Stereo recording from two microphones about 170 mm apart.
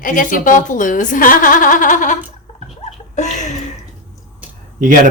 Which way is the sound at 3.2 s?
45° left (ahead or behind).